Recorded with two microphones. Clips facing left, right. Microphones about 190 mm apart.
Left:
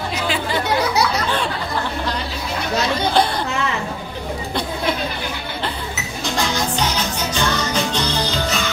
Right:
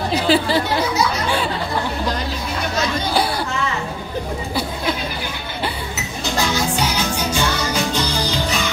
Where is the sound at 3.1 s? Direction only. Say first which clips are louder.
Left 2 dB; 5° right (ahead or behind).